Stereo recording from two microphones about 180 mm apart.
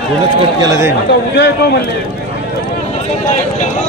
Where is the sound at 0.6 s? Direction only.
20° right (ahead or behind).